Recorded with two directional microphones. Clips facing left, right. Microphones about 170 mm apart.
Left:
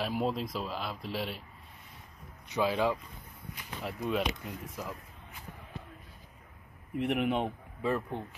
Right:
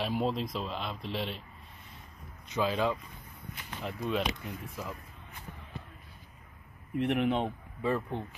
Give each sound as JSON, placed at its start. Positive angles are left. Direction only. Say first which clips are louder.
{"t": 0.0, "sound": "speech", "louder": "right 1 dB", "side_deg": 5}
{"t": 2.4, "sound": "speech", "louder": "left 1 dB", "side_deg": 15}
{"t": 7.0, "sound": "speech", "louder": "right 1 dB", "side_deg": 10}